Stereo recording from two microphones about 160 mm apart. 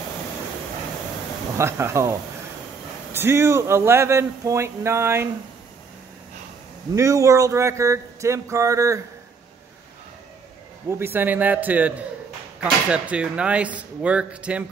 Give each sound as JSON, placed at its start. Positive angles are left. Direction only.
{"t": 1.6, "sound": "speech", "side_deg": -15}
{"t": 7.0, "sound": "speech", "side_deg": -20}
{"t": 10.9, "sound": "speech", "side_deg": -15}
{"t": 12.9, "sound": "speech", "side_deg": -5}